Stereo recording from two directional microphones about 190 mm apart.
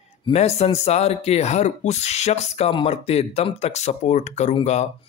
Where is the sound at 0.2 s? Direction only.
35° left (ahead or behind).